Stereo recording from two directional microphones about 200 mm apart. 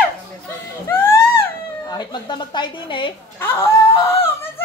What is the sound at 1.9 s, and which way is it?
A woman's voice, 20° left (ahead or behind).